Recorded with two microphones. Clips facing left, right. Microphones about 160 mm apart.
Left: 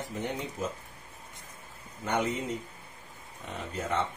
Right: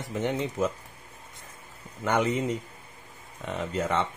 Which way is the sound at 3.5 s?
80° right.